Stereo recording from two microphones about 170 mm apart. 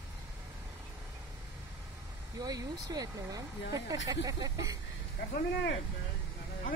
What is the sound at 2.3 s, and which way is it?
Speech, 20° right (ahead or behind).